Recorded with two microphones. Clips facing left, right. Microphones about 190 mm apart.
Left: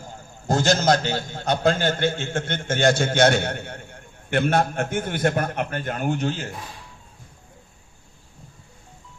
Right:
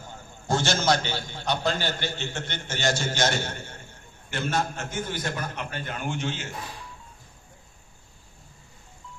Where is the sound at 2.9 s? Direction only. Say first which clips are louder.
Left 8 dB; 60° left (ahead or behind); by 6.5 s 40° left (ahead or behind).